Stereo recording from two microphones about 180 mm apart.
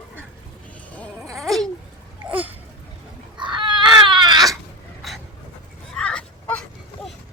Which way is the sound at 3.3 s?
25° right (ahead or behind).